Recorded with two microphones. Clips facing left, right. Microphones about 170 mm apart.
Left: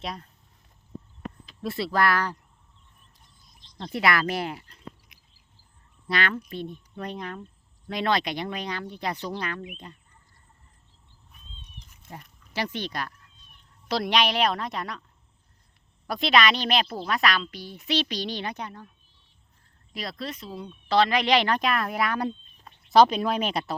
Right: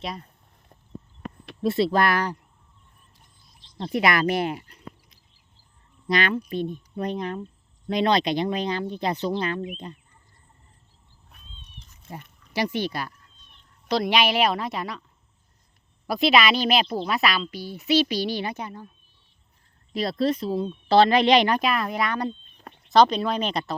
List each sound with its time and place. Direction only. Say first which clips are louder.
0.0 s speech: right 2 dB; centre (ahead or behind)
1.6 s speech: right 4 dB; 25° right (ahead or behind)
3.9 s speech: right 3 dB; 20° right (ahead or behind)
6.1 s speech: right 4 dB; 15° right (ahead or behind)
11.3 s cat: right 2 dB; 70° right (ahead or behind)
12.5 s speech: right 4 dB; 10° right (ahead or behind)
16.0 s speech: right 3 dB; 10° right (ahead or behind)
19.9 s speech: right 11 dB; 30° right (ahead or behind); by 23.7 s 10° left (ahead or behind)